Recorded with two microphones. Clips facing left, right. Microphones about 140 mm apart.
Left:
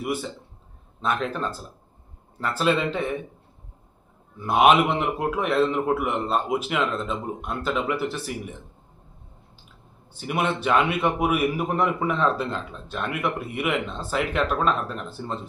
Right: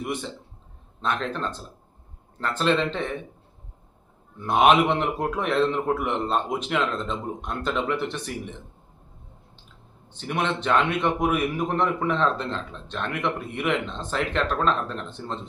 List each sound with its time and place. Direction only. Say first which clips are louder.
0.0 s a man's voice: left 2 dB; 5° left (ahead or behind)
4.4 s a man's voice: left 1 dB; 5° left (ahead or behind)
10.1 s a man's voice: left 1 dB; 10° left (ahead or behind)